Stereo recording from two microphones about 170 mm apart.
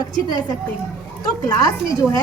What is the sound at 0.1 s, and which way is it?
Speech, 25° left (ahead or behind).